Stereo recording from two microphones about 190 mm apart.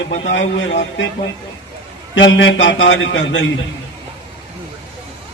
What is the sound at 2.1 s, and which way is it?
A man's voice, 75° left (ahead or behind).